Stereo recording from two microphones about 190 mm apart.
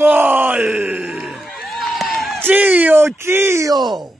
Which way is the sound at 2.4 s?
10° right (ahead or behind).